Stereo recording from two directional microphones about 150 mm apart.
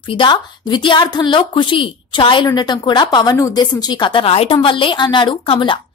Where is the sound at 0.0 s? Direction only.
35° left (ahead or behind).